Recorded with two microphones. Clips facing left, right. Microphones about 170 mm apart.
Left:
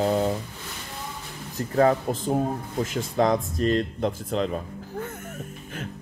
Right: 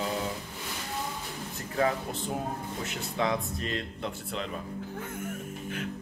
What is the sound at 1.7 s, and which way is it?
Speech, 40° left (ahead or behind).